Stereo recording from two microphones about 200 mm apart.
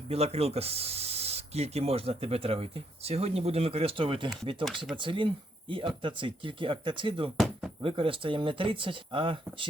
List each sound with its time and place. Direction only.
0.1 s speech: 30° right (ahead or behind)
7.3 s a sound: centre (ahead or behind)
7.8 s speech: 25° right (ahead or behind)